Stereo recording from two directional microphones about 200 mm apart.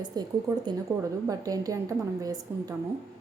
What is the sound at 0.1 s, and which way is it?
A woman's voice, 20° right (ahead or behind).